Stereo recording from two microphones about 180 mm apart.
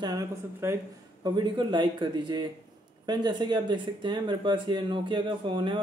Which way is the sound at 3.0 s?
25° right (ahead or behind).